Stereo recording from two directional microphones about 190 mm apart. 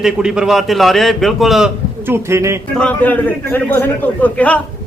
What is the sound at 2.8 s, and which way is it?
A man's voice, 5° left (ahead or behind).